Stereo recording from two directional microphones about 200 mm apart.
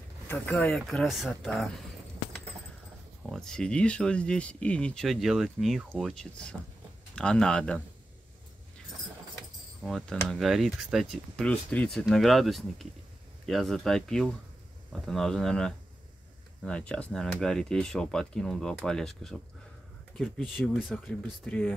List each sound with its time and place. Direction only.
0.3 s speech: 10° left (ahead or behind)
3.3 s speech: 5° left (ahead or behind)
9.8 s speech: centre (ahead or behind)